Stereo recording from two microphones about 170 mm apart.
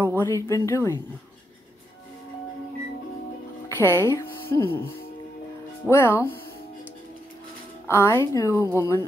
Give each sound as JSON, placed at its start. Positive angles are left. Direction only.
{"t": 0.0, "sound": "a woman's voice", "side_deg": 15}
{"t": 3.6, "sound": "speech", "side_deg": 15}
{"t": 7.9, "sound": "speech", "side_deg": 15}